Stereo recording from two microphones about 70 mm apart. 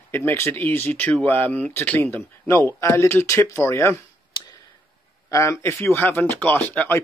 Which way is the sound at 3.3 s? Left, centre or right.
Left.